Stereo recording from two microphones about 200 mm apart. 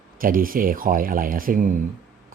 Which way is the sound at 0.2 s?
45° right (ahead or behind).